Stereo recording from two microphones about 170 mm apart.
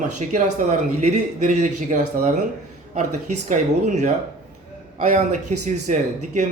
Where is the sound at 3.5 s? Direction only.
45° right (ahead or behind).